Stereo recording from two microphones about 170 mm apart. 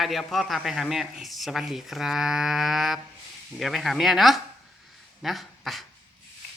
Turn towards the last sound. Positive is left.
turn(degrees=0)  # may be behind; listen again after turning